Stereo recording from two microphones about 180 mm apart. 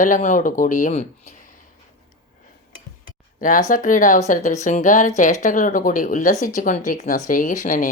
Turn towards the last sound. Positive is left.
turn(degrees=50)  # may be behind; listen again after turning